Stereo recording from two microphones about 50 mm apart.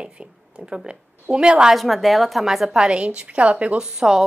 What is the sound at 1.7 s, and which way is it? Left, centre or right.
Speech, centre.